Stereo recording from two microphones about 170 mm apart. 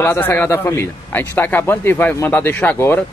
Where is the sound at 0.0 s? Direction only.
15° left (ahead or behind).